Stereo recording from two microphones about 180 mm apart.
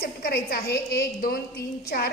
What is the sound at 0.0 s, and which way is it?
A woman's voice, 55° left (ahead or behind).